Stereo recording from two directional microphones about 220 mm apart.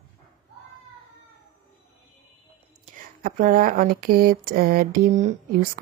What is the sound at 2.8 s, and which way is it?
Speech, 40° right (ahead or behind).